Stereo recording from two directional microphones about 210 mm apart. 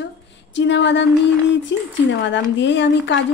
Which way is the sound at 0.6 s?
60° left (ahead or behind).